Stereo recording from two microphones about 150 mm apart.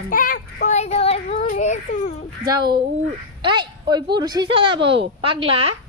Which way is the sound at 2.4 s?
30° right (ahead or behind).